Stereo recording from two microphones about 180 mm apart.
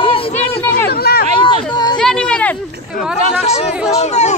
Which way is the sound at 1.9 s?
5° left (ahead or behind).